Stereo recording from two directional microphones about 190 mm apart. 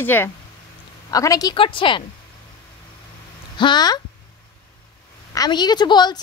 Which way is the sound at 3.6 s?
20° left (ahead or behind).